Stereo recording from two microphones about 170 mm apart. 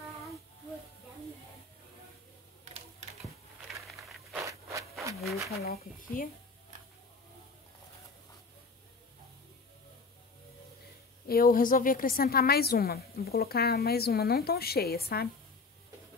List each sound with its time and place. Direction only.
4.4 s a sound: 20° right (ahead or behind)
5.6 s a woman's voice: 65° left (ahead or behind)
11.2 s a woman's voice: 60° left (ahead or behind)